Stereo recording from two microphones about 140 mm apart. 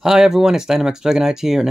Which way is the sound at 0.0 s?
5° right (ahead or behind).